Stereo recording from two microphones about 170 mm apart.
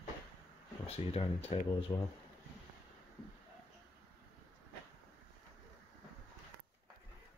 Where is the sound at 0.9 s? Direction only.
35° left (ahead or behind).